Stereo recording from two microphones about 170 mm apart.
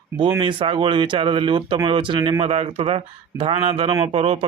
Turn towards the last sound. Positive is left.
turn(degrees=-35)  # may be behind; listen again after turning